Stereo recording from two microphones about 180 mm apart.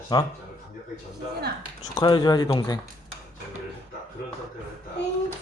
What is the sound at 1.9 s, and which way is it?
Speech, 25° left (ahead or behind).